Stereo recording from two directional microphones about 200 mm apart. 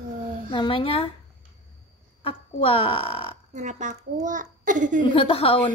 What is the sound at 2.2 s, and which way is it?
Speech, 25° left (ahead or behind).